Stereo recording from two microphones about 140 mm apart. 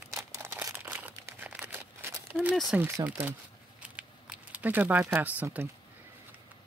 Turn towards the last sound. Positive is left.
turn(degrees=-10)  # may be behind; listen again after turning